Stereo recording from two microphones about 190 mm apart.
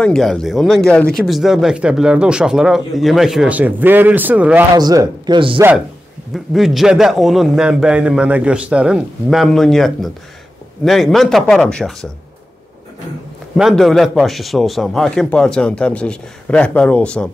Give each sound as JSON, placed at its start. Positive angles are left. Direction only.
{"t": 0.0, "sound": "a man's voice", "side_deg": 5}
{"t": 4.7, "sound": "speech", "side_deg": -20}
{"t": 6.3, "sound": "a man's voice", "side_deg": 0}
{"t": 13.6, "sound": "a man's voice", "side_deg": 0}